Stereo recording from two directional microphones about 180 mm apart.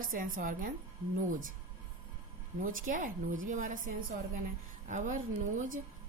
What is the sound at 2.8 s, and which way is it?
Speech, 50° right (ahead or behind).